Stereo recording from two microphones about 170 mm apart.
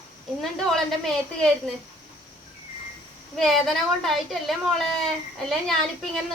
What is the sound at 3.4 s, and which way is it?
A woman's voice, centre (ahead or behind).